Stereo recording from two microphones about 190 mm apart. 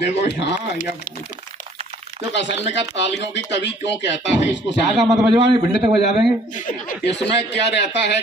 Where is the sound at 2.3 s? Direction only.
70° left (ahead or behind).